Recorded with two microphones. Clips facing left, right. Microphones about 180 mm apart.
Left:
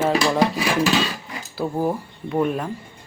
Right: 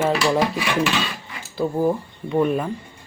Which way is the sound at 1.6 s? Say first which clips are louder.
Right 2 dB; 5° left (ahead or behind).